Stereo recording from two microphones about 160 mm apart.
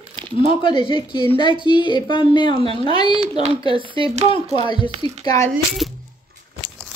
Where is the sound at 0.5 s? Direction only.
30° left (ahead or behind).